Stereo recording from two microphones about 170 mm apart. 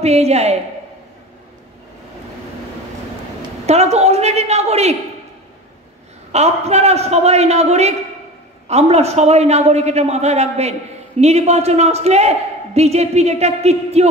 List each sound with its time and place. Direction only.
0.0 s a man's voice: 40° right (ahead or behind)
3.6 s a man's voice: 40° right (ahead or behind)
6.3 s a man's voice: 40° right (ahead or behind)